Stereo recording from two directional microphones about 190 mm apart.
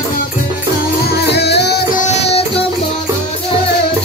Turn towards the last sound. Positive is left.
turn(degrees=35)  # may be behind; listen again after turning